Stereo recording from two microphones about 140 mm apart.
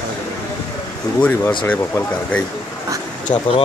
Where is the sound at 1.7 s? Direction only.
15° left (ahead or behind).